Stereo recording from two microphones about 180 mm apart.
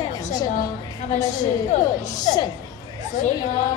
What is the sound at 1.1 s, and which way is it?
A woman's voice, 40° left (ahead or behind).